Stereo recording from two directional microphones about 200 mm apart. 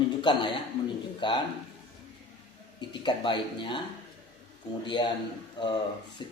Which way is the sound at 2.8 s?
25° left (ahead or behind).